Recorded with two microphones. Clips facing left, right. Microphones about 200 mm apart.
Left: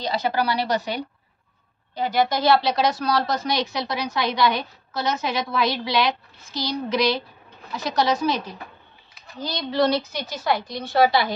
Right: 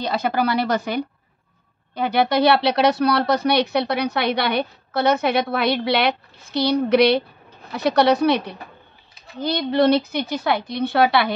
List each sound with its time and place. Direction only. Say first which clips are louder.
0.0 s speech: right 2 dB; 50° right (ahead or behind)
2.0 s speech: right 4 dB; 60° right (ahead or behind)